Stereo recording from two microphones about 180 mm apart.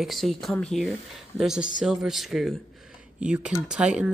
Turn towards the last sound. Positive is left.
turn(degrees=-5)  # may be behind; listen again after turning